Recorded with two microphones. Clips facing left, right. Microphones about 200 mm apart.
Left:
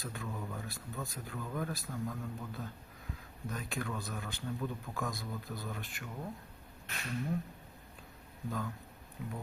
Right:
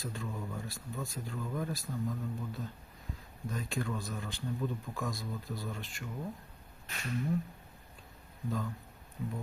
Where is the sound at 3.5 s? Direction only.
Centre (ahead or behind).